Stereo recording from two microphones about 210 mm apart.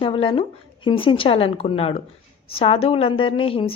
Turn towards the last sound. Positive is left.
turn(degrees=25)  # may be behind; listen again after turning